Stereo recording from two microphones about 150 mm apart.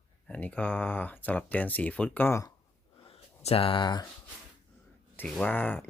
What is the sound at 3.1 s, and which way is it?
Speech, 40° left (ahead or behind).